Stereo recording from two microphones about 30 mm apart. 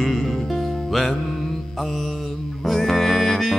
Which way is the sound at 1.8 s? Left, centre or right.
Centre.